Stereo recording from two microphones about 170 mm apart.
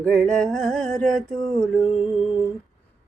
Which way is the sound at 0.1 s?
5° left (ahead or behind).